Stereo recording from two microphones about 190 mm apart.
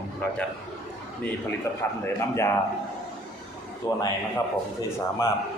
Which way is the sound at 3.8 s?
15° left (ahead or behind).